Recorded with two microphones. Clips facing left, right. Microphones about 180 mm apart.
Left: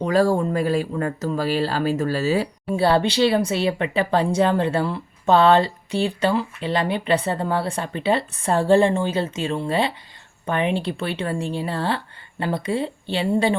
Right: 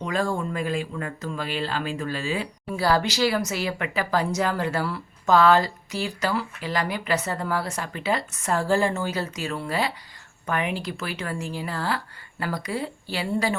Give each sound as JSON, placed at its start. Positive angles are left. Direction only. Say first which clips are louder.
{"t": 0.0, "sound": "speech", "louder": "left 8 dB", "side_deg": 40}
{"t": 2.7, "sound": "speech", "louder": "left 5 dB", "side_deg": 30}